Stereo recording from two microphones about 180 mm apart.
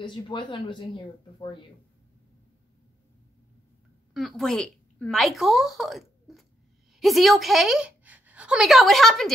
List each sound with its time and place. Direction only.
0.0 s speech: 25° left (ahead or behind)
4.1 s a woman's voice: centre (ahead or behind)